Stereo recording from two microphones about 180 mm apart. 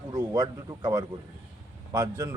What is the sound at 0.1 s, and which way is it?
A man's voice, 20° right (ahead or behind).